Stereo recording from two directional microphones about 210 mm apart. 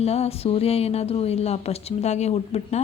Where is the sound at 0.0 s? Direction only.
30° left (ahead or behind).